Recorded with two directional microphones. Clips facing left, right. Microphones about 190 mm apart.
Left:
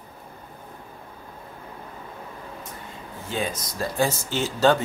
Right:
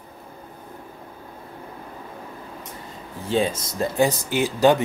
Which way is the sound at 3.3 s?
30° right (ahead or behind).